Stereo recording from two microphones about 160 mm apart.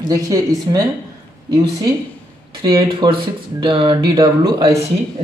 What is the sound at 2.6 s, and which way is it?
Speech, 30° right (ahead or behind).